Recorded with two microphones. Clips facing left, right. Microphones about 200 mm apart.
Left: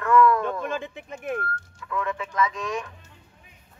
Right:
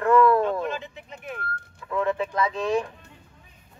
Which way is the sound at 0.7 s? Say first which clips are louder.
Left 3 dB; 55° left (ahead or behind).